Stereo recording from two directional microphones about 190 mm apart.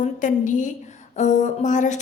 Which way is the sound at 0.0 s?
40° left (ahead or behind).